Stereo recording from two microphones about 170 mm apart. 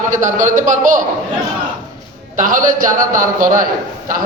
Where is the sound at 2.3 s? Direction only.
55° right (ahead or behind).